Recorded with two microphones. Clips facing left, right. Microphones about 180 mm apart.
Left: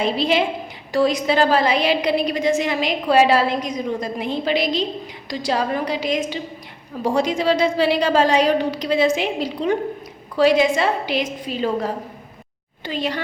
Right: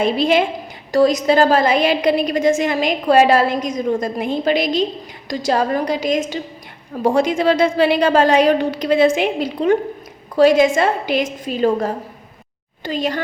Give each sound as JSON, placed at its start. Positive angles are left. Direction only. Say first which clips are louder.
{"t": 0.0, "sound": "a woman's voice", "louder": "right 3 dB", "side_deg": -50}